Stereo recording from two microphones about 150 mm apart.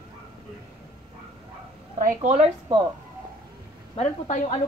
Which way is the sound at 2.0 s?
55° right (ahead or behind).